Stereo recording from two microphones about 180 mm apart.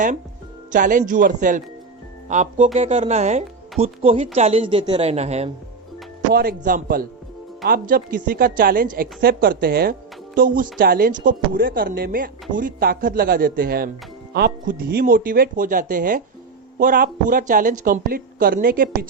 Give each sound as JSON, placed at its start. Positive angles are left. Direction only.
{"t": 0.7, "sound": "a woman's voice", "side_deg": -45}
{"t": 6.3, "sound": "a woman's voice", "side_deg": -55}